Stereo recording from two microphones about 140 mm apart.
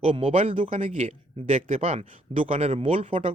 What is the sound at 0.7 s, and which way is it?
Speech, 60° right (ahead or behind).